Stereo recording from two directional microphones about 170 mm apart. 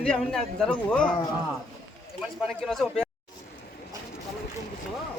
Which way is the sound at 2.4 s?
Centre (ahead or behind).